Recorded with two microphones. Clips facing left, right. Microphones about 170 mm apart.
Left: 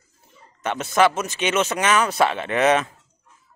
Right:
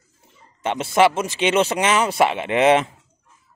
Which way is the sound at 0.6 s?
25° right (ahead or behind).